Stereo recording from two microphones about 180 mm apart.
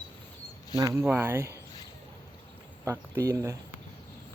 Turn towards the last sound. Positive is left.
turn(degrees=-20)  # may be behind; listen again after turning